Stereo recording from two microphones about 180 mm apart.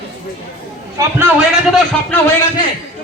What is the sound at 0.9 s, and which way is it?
Speech, 10° right (ahead or behind).